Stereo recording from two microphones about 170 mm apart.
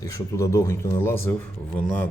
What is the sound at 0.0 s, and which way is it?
A man's voice, 15° left (ahead or behind).